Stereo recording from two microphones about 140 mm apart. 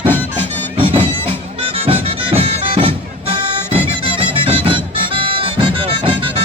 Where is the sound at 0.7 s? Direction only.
40° right (ahead or behind).